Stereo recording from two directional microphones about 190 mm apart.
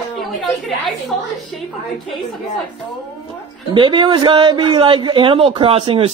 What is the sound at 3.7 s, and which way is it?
Speech, 25° right (ahead or behind).